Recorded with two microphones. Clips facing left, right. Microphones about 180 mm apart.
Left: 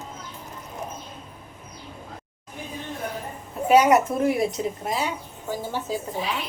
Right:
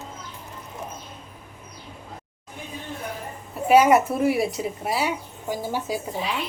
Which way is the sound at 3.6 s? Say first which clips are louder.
Right 1 dB; 5° right (ahead or behind).